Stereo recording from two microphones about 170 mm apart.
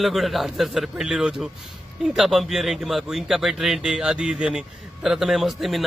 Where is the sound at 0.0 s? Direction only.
Centre (ahead or behind).